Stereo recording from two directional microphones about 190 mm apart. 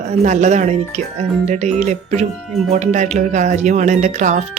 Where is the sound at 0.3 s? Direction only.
35° right (ahead or behind).